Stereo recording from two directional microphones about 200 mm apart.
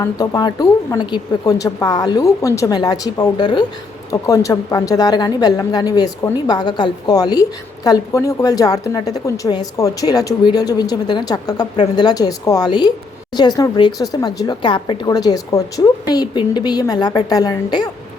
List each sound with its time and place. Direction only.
0.0 s speech: 20° left (ahead or behind)